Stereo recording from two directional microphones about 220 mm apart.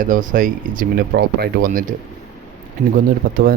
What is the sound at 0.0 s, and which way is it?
Speech, 35° right (ahead or behind).